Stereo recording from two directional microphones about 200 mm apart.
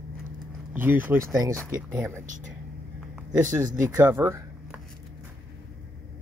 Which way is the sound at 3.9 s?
10° right (ahead or behind).